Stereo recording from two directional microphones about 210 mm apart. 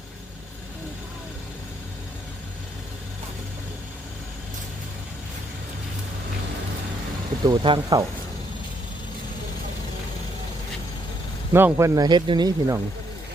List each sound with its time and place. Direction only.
7.4 s speech: 20° right (ahead or behind)
11.5 s speech: 10° right (ahead or behind)